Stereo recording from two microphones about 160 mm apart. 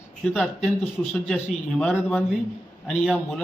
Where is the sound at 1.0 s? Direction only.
5° left (ahead or behind).